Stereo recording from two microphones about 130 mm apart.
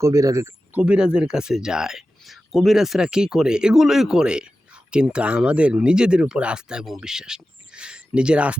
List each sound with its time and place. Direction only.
0.0 s speech: 25° right (ahead or behind)
0.7 s speech: 10° right (ahead or behind)